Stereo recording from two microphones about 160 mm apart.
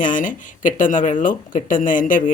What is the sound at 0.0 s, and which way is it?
Speech, 55° left (ahead or behind).